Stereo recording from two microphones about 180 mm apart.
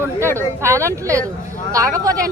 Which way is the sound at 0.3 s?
15° right (ahead or behind).